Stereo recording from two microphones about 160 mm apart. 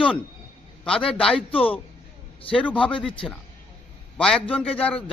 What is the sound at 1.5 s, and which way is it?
Speech, 35° left (ahead or behind).